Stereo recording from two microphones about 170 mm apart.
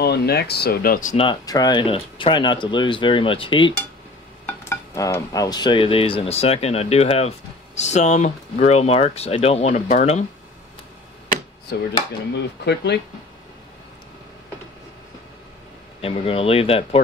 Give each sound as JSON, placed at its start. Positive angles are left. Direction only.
{"t": 0.0, "sound": "speech", "side_deg": 75}
{"t": 1.1, "sound": "speech", "side_deg": 30}
{"t": 4.5, "sound": "speech", "side_deg": 15}
{"t": 12.6, "sound": "speech", "side_deg": 80}
{"t": 16.0, "sound": "speech", "side_deg": 35}